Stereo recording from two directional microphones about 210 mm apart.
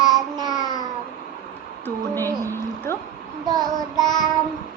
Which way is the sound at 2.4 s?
10° left (ahead or behind).